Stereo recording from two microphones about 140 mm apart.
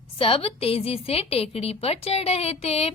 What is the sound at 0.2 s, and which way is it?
A woman's voice, 40° left (ahead or behind).